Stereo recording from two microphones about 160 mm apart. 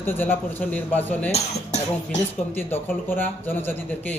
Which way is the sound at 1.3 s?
45° left (ahead or behind).